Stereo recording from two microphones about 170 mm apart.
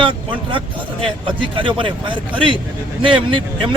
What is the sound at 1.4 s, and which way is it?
Speech, 30° right (ahead or behind).